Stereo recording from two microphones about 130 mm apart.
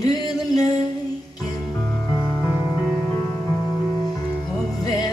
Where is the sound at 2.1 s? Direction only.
20° left (ahead or behind).